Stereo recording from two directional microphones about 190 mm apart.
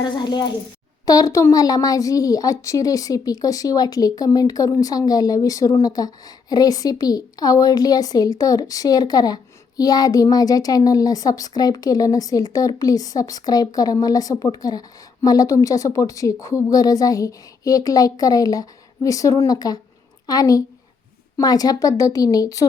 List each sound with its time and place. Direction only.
0.0 s a woman's voice: 20° left (ahead or behind)